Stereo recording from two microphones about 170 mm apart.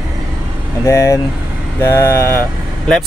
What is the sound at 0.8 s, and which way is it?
Speech, 15° left (ahead or behind).